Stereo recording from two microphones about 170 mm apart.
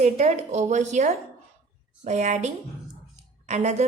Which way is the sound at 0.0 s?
40° right (ahead or behind).